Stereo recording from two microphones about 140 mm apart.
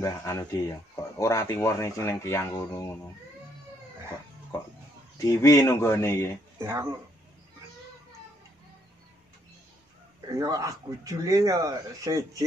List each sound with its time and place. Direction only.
0.0 s speech: 25° left (ahead or behind)
5.2 s speech: 25° left (ahead or behind)
6.6 s speech: 20° right (ahead or behind)
10.4 s speech: 25° right (ahead or behind)